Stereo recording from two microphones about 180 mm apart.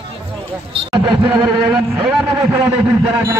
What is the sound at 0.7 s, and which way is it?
Speech, 30° right (ahead or behind).